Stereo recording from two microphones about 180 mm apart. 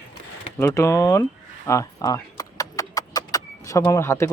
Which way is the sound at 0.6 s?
15° left (ahead or behind).